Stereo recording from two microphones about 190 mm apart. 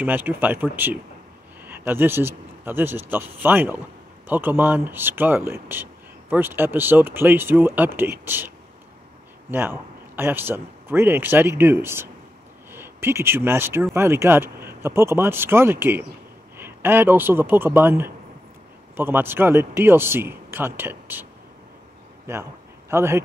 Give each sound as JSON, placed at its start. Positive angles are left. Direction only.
{"t": 0.0, "sound": "speech", "side_deg": -10}
{"t": 9.5, "sound": "a man's voice", "side_deg": -10}